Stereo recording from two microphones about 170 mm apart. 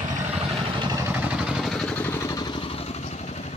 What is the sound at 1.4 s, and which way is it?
Vehicle, 5° right (ahead or behind).